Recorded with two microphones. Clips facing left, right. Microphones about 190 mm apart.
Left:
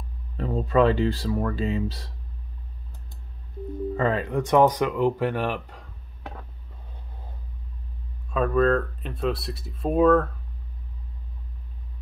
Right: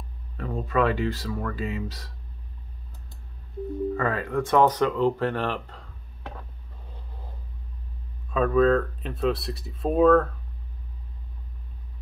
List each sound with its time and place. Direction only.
0.4 s speech: 30° left (ahead or behind)
3.9 s speech: 20° left (ahead or behind)
8.3 s speech: centre (ahead or behind)